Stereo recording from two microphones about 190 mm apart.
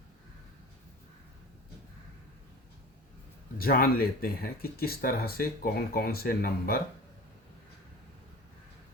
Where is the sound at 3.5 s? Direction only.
50° left (ahead or behind).